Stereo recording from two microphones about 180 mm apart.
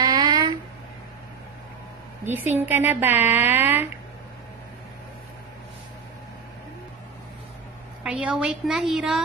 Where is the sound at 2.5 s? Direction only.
10° right (ahead or behind).